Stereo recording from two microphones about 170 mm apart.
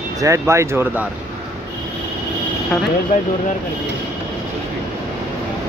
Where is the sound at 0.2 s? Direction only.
15° right (ahead or behind).